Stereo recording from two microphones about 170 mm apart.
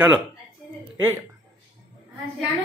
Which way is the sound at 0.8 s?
10° right (ahead or behind).